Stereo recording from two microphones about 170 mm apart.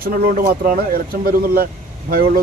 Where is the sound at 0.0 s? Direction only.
60° right (ahead or behind).